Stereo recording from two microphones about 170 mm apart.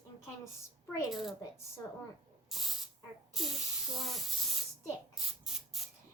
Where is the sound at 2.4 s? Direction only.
Centre (ahead or behind).